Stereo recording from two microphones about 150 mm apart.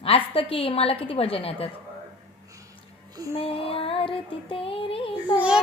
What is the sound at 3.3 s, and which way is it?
Music, 40° left (ahead or behind).